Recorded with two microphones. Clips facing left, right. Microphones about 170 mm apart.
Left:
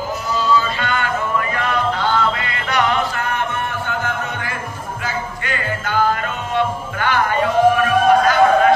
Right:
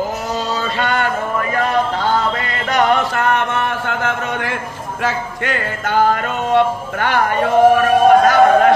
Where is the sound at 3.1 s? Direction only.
70° right (ahead or behind).